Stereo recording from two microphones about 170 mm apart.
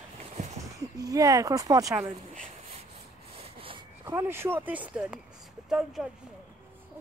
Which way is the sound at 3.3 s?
35° right (ahead or behind).